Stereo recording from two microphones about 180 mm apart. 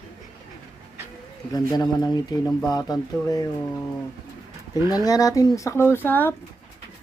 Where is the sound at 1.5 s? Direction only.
20° left (ahead or behind).